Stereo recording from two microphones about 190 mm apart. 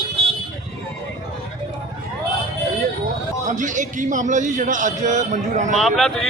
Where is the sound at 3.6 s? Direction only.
40° right (ahead or behind).